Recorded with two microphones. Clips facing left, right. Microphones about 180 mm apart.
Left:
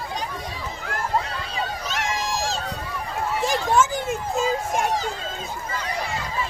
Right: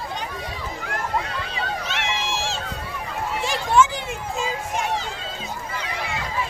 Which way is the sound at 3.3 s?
40° left (ahead or behind).